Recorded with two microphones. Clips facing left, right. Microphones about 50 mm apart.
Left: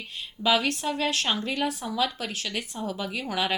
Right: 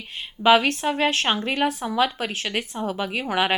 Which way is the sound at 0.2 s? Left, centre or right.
Right.